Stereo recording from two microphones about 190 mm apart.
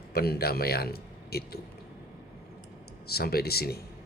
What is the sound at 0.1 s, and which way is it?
A man's voice, 55° left (ahead or behind).